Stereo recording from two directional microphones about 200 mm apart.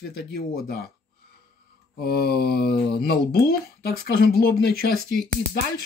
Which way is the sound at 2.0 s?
50° left (ahead or behind).